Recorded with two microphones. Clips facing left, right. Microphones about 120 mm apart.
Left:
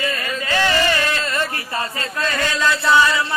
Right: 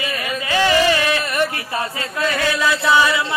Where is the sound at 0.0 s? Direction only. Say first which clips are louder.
Even; 15° right (ahead or behind).